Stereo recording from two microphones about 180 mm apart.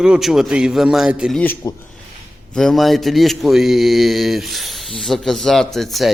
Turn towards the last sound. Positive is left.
turn(degrees=0)  # may be behind; listen again after turning